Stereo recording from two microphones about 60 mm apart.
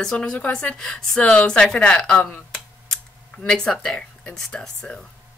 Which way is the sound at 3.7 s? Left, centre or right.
Centre.